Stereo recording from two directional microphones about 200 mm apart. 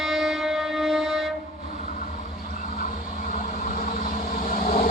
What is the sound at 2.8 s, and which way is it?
Vehicle, 40° left (ahead or behind).